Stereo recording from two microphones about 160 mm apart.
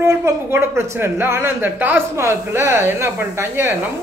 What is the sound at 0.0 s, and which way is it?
A man's voice, 15° right (ahead or behind).